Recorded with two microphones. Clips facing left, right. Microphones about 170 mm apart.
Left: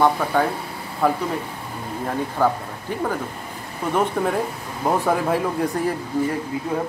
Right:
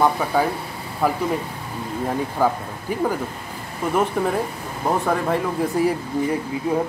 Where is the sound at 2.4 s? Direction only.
10° right (ahead or behind).